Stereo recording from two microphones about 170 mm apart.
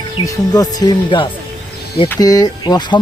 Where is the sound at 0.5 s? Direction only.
25° left (ahead or behind).